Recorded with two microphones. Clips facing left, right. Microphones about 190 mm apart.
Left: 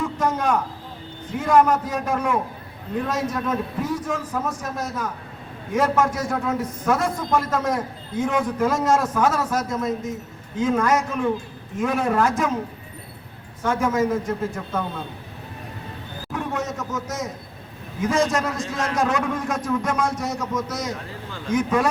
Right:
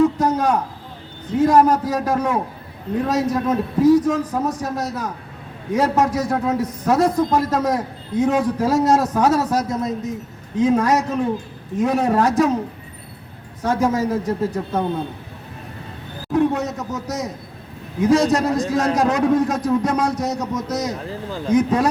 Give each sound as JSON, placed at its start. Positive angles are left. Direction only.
{"t": 0.0, "sound": "a man's voice", "side_deg": -40}
{"t": 13.6, "sound": "a man's voice", "side_deg": -40}
{"t": 16.3, "sound": "a man's voice", "side_deg": -35}